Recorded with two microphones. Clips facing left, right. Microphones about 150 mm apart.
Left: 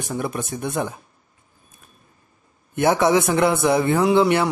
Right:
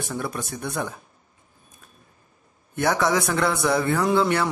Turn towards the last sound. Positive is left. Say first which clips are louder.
# left 4 dB
turn(degrees=20)  # may be behind; listen again after turning